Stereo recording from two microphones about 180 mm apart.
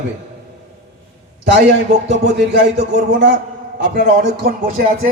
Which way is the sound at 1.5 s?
70° right (ahead or behind).